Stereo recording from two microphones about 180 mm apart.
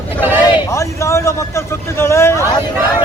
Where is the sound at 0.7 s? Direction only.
15° left (ahead or behind).